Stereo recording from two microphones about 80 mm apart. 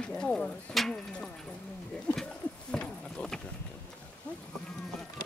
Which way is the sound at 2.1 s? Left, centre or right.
Centre.